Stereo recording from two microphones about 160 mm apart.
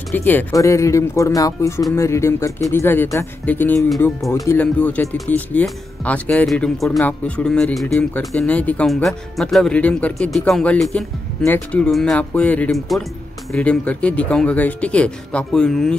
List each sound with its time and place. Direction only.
0.1 s speech: 10° left (ahead or behind)